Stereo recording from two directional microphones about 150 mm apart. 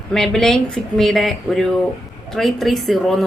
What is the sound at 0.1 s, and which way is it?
A woman's voice, centre (ahead or behind).